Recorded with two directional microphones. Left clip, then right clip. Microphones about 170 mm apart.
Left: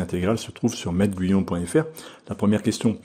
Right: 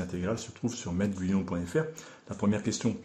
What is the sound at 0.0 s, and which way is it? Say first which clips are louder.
Speech: left 9 dB; 45° left (ahead or behind).